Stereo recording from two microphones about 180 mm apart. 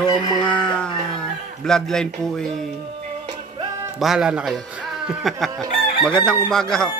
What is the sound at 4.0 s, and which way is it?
Speech, 5° right (ahead or behind).